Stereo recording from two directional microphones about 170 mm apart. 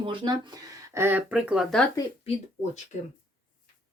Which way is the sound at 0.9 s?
15° right (ahead or behind).